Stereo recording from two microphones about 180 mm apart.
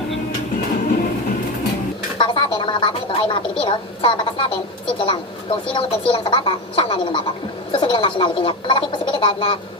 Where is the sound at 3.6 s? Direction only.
25° left (ahead or behind).